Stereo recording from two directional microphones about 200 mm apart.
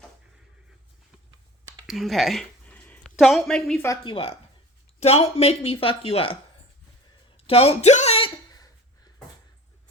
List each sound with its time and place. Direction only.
1.9 s speech: centre (ahead or behind)
3.8 s speech: 25° left (ahead or behind)
7.3 s a sound: 30° left (ahead or behind)